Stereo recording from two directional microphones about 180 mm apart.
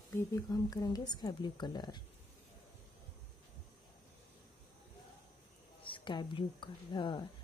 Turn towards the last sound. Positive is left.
turn(degrees=25)  # may be behind; listen again after turning